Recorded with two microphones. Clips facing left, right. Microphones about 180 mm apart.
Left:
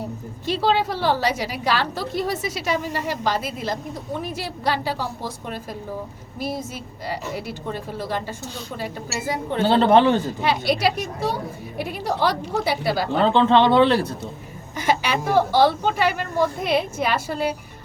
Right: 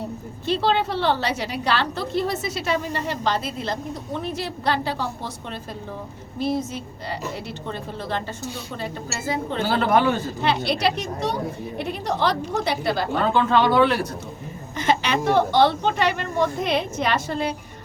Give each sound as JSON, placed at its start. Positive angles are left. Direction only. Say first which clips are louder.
{"t": 0.4, "sound": "a woman's voice", "louder": "left 1 dB", "side_deg": 10}
{"t": 9.6, "sound": "speech", "louder": "left 5 dB", "side_deg": 25}
{"t": 10.4, "sound": "a woman's voice", "louder": "right 1 dB", "side_deg": 10}
{"t": 13.2, "sound": "speech", "louder": "left 3 dB", "side_deg": 25}
{"t": 14.8, "sound": "a woman's voice", "louder": "even", "side_deg": 10}